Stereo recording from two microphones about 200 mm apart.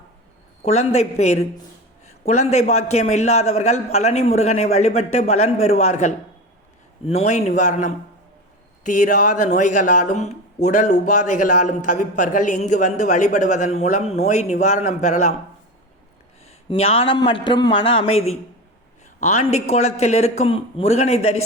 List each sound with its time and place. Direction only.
0.6 s a man's voice: 35° left (ahead or behind)
16.6 s a man's voice: 30° left (ahead or behind)